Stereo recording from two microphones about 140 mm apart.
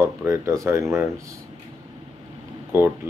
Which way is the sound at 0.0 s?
20° right (ahead or behind).